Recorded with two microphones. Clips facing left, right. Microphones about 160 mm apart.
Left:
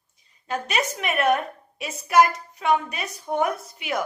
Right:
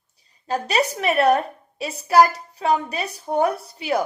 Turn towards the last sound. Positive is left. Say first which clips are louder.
# right 5 dB
turn(degrees=-35)  # may be behind; listen again after turning